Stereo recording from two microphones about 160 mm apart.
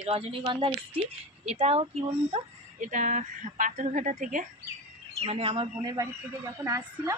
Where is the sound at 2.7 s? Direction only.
50° right (ahead or behind).